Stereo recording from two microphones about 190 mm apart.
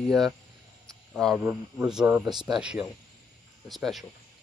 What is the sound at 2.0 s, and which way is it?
Speech, 15° right (ahead or behind).